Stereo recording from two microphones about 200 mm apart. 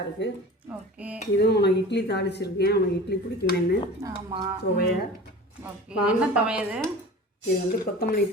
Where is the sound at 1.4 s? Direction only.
55° left (ahead or behind).